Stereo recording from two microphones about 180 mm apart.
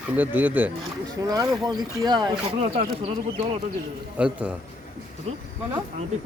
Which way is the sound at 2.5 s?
35° right (ahead or behind).